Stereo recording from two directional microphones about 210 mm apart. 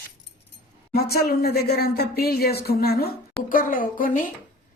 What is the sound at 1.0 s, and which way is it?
A woman's voice, 50° left (ahead or behind).